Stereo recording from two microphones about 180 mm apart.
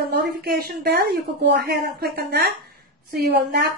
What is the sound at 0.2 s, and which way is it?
A woman's voice, 60° right (ahead or behind).